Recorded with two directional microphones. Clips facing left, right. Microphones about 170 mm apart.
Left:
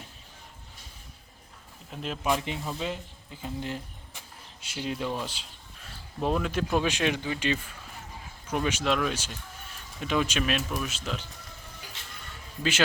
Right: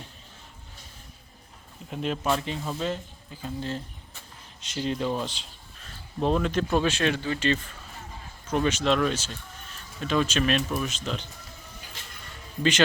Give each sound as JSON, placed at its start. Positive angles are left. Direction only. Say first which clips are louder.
{"t": 1.9, "sound": "speech", "louder": "right 6 dB", "side_deg": 0}
{"t": 2.2, "sound": "speech", "louder": "left 1 dB", "side_deg": 15}
{"t": 2.6, "sound": "speech", "louder": "right 3 dB", "side_deg": 0}
{"t": 3.4, "sound": "speech", "louder": "right 2 dB", "side_deg": 15}
{"t": 5.2, "sound": "a sound", "louder": "right 3 dB", "side_deg": 10}
{"t": 6.2, "sound": "speech", "louder": "right 3 dB", "side_deg": 5}